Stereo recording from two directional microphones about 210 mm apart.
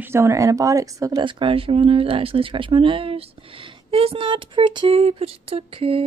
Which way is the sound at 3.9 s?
25° right (ahead or behind).